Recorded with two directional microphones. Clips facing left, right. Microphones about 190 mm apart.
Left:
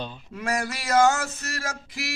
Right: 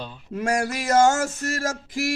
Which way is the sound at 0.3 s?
45° right (ahead or behind).